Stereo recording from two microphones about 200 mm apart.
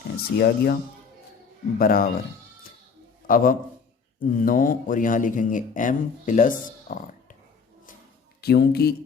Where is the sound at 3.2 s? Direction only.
45° left (ahead or behind).